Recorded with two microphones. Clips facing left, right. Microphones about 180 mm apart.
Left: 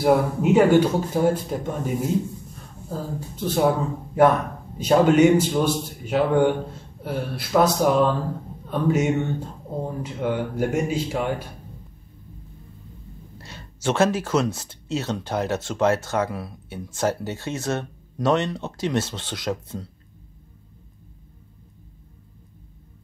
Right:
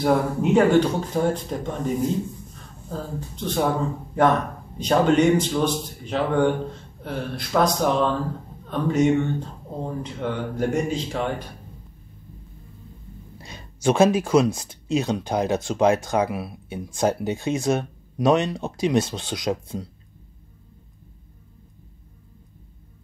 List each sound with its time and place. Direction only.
0.0 s a man's voice: 10° left (ahead or behind)
4.7 s a man's voice: 5° left (ahead or behind)
13.4 s speech: 15° right (ahead or behind)